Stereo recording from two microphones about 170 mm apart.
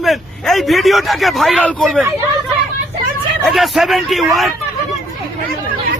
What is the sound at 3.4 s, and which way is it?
Speech, centre (ahead or behind).